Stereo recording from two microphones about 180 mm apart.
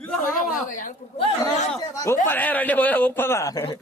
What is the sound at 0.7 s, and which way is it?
Speech, 45° left (ahead or behind).